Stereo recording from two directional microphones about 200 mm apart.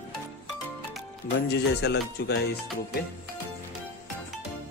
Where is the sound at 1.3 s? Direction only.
55° left (ahead or behind).